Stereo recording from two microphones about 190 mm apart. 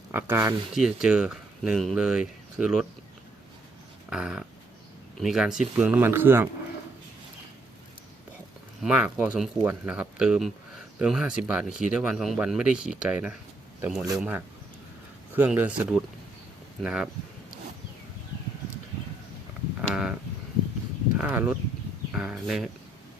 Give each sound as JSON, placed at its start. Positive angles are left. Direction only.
{"t": 0.1, "sound": "speech", "side_deg": -10}
{"t": 4.1, "sound": "speech", "side_deg": -5}
{"t": 8.8, "sound": "speech", "side_deg": -5}
{"t": 19.9, "sound": "a sound", "side_deg": -5}
{"t": 21.2, "sound": "speech", "side_deg": -5}